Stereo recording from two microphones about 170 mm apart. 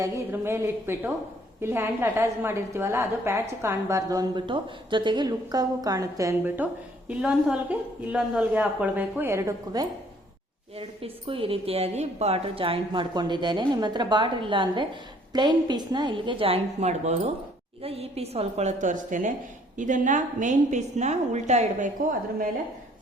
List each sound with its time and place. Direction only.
0.0 s a woman's voice: 15° right (ahead or behind)
7.1 s a woman's voice: 5° right (ahead or behind)
10.8 s a woman's voice: 35° right (ahead or behind)